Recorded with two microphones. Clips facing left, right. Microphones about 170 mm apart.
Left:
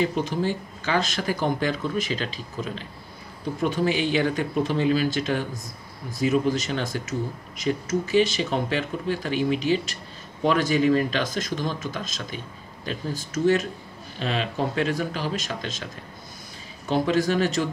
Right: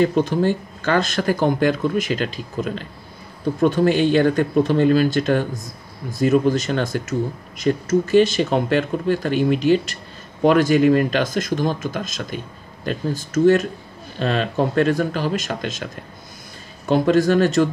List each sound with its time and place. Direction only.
0.0 s speech: 60° right (ahead or behind)